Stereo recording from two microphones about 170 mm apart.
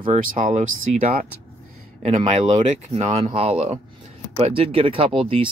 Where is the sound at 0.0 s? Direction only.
50° right (ahead or behind).